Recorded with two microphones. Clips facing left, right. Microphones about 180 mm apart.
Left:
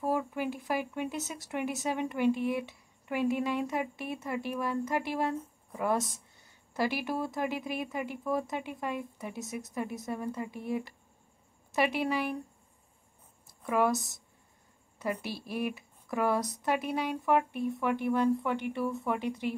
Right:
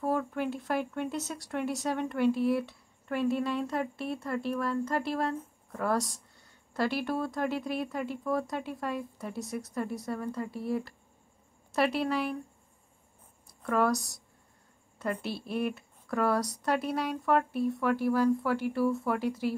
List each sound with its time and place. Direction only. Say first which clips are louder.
0.0 s speech: right 1 dB; 10° left (ahead or behind)
3.1 s speech: right 1 dB; 10° left (ahead or behind)
9.9 s speech: right 1 dB; 15° left (ahead or behind)
11.7 s speech: right 1 dB; 10° left (ahead or behind)
13.7 s speech: even; 5° left (ahead or behind)